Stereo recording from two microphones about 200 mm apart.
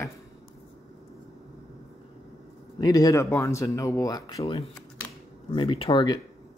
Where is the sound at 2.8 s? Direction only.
20° left (ahead or behind).